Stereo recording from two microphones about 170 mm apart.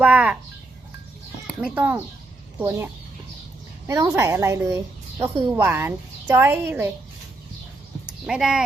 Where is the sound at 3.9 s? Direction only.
20° right (ahead or behind).